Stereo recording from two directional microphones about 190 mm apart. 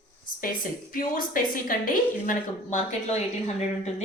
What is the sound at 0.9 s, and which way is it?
A woman's voice, 45° left (ahead or behind).